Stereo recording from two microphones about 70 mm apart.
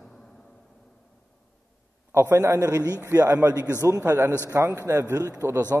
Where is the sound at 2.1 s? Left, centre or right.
Right.